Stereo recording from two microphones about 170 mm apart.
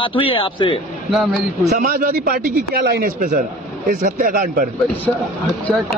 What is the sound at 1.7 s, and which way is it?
Speech, 55° right (ahead or behind).